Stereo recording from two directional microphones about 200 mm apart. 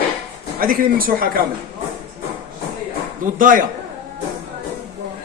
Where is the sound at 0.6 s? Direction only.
45° right (ahead or behind).